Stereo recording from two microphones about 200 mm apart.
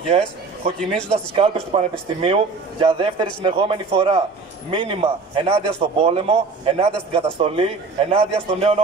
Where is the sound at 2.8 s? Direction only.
25° right (ahead or behind).